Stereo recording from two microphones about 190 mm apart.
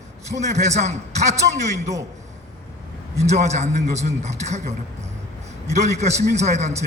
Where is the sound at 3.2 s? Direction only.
35° right (ahead or behind).